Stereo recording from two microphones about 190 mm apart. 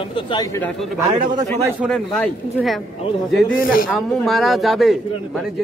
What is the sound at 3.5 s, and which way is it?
Speech, 50° left (ahead or behind).